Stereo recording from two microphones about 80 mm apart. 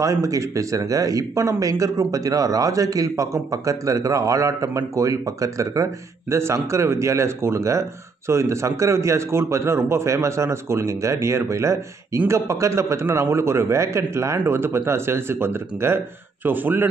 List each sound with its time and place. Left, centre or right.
0.0 s a man's voice: right